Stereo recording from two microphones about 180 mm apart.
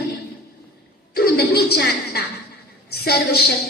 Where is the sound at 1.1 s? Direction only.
60° left (ahead or behind).